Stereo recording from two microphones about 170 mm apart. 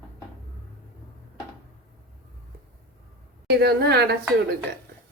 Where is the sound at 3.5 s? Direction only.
70° right (ahead or behind).